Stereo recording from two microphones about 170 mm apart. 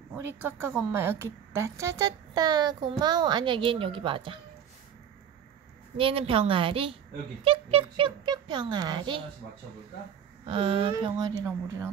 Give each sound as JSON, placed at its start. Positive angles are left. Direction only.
{"t": 0.2, "sound": "a woman's voice", "side_deg": -15}
{"t": 5.9, "sound": "a child's voice", "side_deg": -30}
{"t": 10.4, "sound": "speech", "side_deg": -35}